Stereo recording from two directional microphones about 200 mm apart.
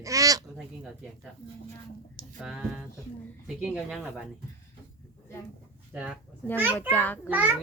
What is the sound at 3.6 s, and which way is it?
Speech, 5° right (ahead or behind).